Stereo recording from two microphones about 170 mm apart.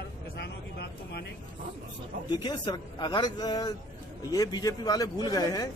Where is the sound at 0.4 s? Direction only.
75° left (ahead or behind).